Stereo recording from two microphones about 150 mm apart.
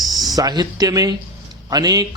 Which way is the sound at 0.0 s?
25° right (ahead or behind).